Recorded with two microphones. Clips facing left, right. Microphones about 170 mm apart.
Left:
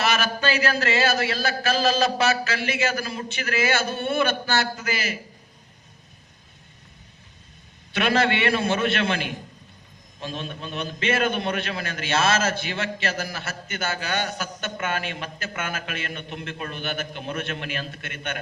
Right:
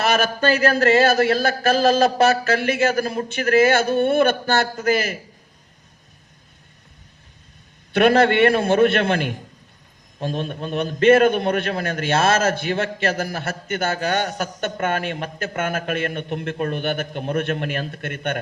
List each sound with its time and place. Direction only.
0.0 s a man's voice: 50° right (ahead or behind)
7.9 s a man's voice: 55° right (ahead or behind)